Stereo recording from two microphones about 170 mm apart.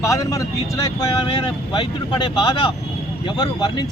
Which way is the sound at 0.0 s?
20° left (ahead or behind).